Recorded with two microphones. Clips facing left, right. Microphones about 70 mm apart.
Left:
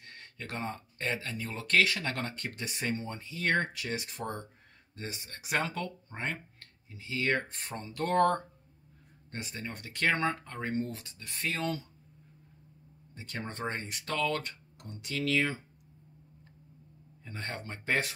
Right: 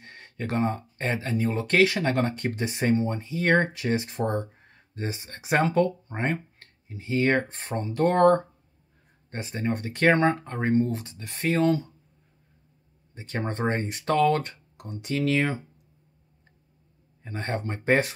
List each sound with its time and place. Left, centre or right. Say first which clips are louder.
0.0 s speech: right 10 dB; right
13.1 s speech: right 9 dB; right
17.2 s speech: right 9 dB; right